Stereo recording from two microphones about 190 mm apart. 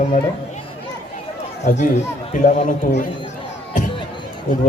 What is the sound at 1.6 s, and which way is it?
A woman's voice, 40° left (ahead or behind).